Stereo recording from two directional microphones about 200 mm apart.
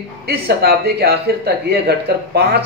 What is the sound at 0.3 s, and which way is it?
Speech, 55° right (ahead or behind).